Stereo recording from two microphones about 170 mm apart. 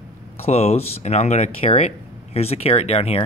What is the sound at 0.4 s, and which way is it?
Speech, 40° left (ahead or behind).